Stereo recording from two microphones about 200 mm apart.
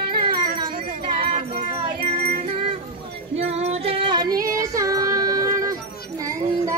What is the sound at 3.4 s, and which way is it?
Female singing, 35° right (ahead or behind).